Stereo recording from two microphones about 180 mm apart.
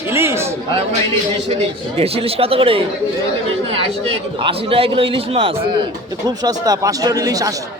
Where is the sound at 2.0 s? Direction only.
35° right (ahead or behind).